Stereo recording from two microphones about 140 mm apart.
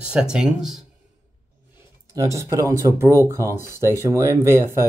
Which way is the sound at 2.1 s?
20° right (ahead or behind).